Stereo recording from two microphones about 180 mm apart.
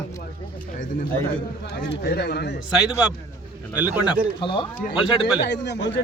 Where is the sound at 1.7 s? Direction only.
60° left (ahead or behind).